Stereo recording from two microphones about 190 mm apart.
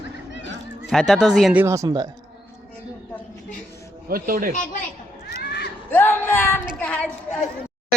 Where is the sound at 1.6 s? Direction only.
15° right (ahead or behind).